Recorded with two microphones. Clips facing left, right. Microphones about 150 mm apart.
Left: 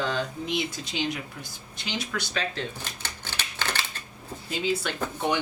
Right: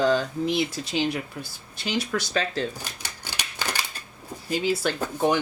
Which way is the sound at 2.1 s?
40° right (ahead or behind).